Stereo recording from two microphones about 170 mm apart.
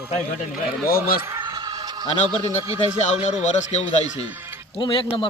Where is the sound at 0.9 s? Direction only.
60° left (ahead or behind).